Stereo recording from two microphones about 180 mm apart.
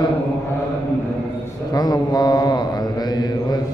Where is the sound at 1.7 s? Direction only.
20° left (ahead or behind).